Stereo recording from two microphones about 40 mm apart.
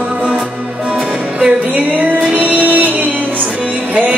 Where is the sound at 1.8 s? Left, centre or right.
Right.